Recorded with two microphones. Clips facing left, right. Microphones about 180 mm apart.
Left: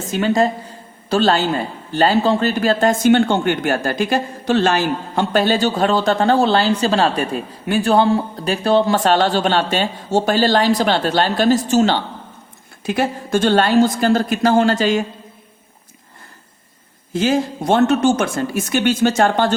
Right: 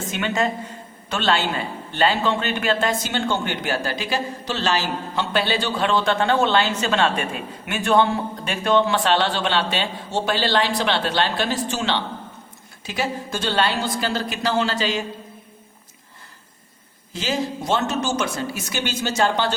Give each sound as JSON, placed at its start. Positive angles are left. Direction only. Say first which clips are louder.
{"t": 0.1, "sound": "a woman's voice", "louder": "left 7 dB", "side_deg": 35}
{"t": 17.1, "sound": "a man's voice", "louder": "left 7 dB", "side_deg": 50}